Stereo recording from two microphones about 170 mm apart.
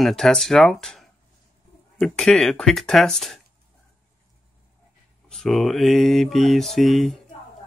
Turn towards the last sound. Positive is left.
turn(degrees=0)  # may be behind; listen again after turning